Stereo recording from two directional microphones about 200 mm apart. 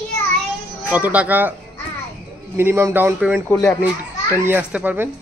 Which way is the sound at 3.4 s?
15° left (ahead or behind).